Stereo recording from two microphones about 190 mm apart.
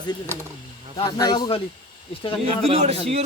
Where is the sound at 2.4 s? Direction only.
30° right (ahead or behind).